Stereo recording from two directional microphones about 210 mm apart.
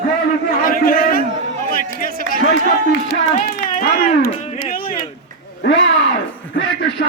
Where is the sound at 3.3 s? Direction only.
40° left (ahead or behind).